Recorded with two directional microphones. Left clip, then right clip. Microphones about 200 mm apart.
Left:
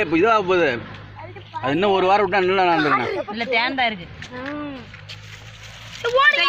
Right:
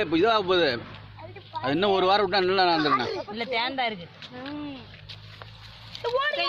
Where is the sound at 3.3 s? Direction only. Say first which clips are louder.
Left 7 dB; 50° right (ahead or behind).